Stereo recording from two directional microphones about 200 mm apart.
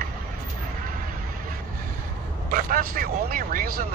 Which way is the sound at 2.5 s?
50° right (ahead or behind).